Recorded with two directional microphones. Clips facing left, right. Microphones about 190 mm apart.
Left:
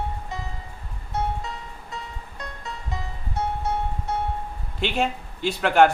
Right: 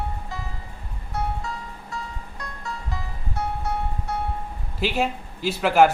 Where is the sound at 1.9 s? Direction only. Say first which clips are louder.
Right 2 dB; 20° left (ahead or behind).